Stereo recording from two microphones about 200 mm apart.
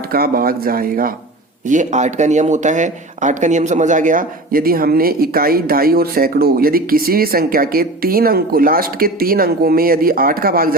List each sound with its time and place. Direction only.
0.1 s speech: 50° right (ahead or behind)